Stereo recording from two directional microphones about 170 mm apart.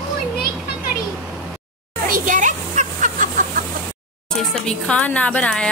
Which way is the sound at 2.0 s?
55° right (ahead or behind).